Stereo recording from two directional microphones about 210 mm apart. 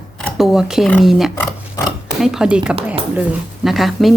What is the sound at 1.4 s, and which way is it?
Speech, 15° left (ahead or behind).